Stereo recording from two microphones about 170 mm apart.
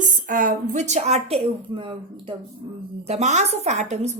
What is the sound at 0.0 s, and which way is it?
A woman's voice, 50° right (ahead or behind).